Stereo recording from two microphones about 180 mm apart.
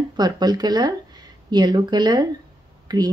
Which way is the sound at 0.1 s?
20° right (ahead or behind).